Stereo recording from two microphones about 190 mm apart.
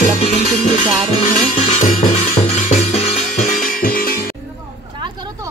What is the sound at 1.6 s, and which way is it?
Music, 40° left (ahead or behind).